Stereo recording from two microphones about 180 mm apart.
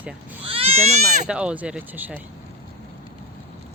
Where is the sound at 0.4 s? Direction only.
30° right (ahead or behind).